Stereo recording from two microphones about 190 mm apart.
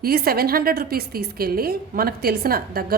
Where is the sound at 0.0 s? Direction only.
55° right (ahead or behind).